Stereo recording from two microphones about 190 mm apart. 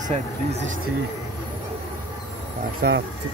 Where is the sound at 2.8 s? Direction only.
50° right (ahead or behind).